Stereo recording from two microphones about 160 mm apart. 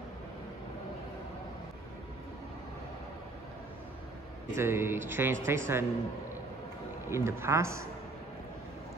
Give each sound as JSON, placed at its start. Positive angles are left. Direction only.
{"t": 4.6, "sound": "speech", "side_deg": -15}
{"t": 7.1, "sound": "speech", "side_deg": -15}